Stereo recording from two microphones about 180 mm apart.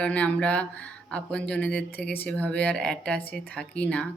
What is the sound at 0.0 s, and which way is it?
Speech, 5° left (ahead or behind).